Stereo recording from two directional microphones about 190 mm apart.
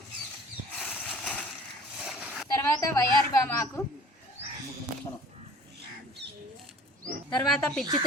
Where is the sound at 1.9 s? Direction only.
5° right (ahead or behind).